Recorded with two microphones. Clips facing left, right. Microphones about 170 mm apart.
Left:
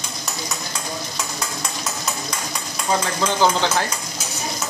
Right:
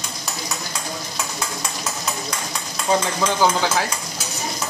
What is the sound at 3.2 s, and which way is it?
Speech, 5° right (ahead or behind).